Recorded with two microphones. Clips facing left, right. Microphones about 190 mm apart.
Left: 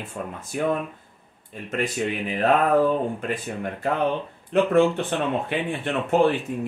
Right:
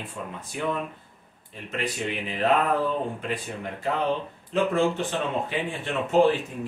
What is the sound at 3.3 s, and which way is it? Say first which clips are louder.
Speech: left 3 dB; 50° left (ahead or behind).